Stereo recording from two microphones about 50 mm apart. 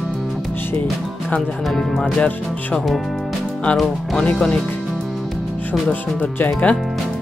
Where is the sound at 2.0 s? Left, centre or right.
Left.